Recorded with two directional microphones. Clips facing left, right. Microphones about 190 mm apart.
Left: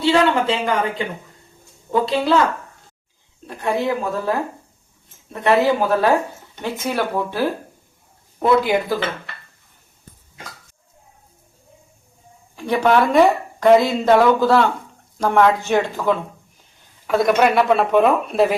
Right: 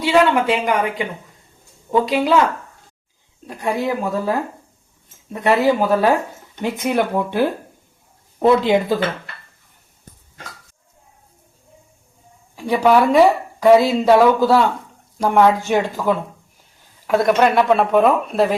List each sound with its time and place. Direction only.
0.0 s speech: 10° right (ahead or behind)
3.4 s speech: 15° right (ahead or behind)
12.5 s speech: 10° right (ahead or behind)